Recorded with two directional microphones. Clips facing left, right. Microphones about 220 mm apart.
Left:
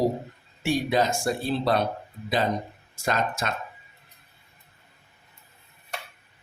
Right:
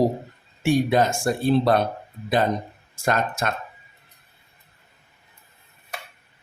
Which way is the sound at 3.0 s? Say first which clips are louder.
Right 3 dB; 50° right (ahead or behind).